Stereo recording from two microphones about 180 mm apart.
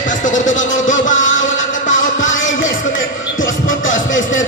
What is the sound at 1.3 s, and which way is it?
Music, 90° left.